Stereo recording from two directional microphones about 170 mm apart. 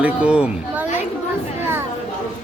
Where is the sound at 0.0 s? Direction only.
5° right (ahead or behind).